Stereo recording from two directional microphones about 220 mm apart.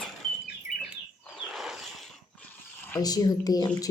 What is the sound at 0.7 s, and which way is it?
Bird, 40° left (ahead or behind).